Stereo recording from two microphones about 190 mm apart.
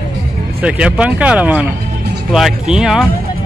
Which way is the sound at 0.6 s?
5° right (ahead or behind).